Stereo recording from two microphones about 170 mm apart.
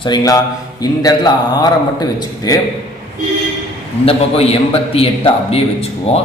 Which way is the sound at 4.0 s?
35° left (ahead or behind).